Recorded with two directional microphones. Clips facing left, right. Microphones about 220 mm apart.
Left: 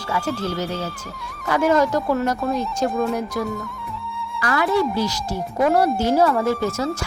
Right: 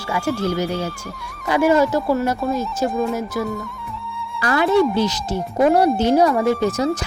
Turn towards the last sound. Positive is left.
turn(degrees=-15)  # may be behind; listen again after turning